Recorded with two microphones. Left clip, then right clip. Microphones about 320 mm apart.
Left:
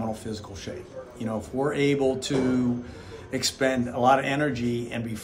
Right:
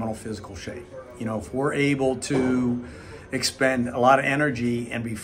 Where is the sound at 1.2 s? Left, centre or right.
Centre.